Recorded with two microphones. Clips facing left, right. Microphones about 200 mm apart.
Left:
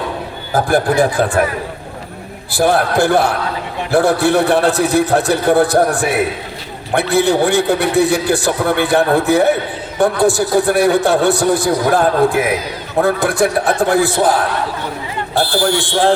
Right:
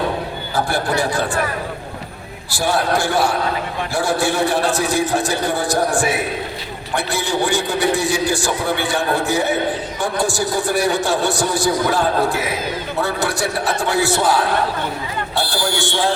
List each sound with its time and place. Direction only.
0.5 s a man's voice: 55° left (ahead or behind)
2.5 s a man's voice: 55° left (ahead or behind)